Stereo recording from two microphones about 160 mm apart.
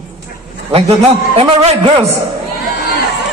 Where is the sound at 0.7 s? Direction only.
40° right (ahead or behind).